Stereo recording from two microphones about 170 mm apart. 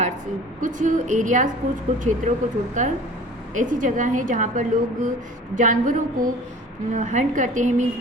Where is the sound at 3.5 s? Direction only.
50° right (ahead or behind).